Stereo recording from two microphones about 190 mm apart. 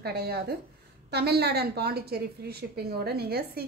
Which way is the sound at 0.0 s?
55° right (ahead or behind).